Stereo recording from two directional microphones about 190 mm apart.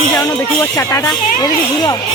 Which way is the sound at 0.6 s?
15° left (ahead or behind).